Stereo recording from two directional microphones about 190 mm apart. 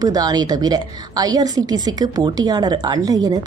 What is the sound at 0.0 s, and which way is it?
Speech, 20° right (ahead or behind).